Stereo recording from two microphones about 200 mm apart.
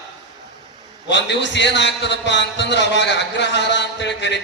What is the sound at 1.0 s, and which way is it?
A man's voice, 60° left (ahead or behind).